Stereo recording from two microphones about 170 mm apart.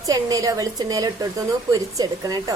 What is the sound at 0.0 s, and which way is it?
A woman's voice, 20° right (ahead or behind).